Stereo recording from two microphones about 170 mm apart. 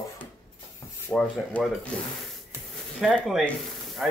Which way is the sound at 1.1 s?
5° left (ahead or behind).